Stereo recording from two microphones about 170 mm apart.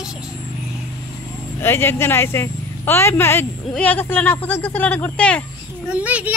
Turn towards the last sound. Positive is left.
turn(degrees=-10)  # may be behind; listen again after turning